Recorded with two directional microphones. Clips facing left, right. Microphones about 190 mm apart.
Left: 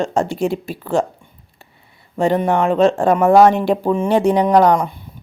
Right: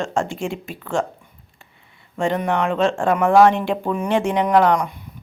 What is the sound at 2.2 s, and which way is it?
Speech, 35° left (ahead or behind).